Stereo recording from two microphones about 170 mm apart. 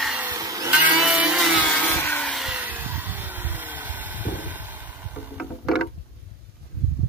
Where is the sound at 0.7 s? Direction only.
10° right (ahead or behind).